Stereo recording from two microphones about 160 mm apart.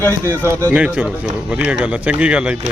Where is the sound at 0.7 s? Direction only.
10° right (ahead or behind).